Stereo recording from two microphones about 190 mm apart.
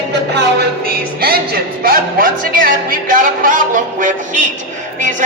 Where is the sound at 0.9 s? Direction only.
55° right (ahead or behind).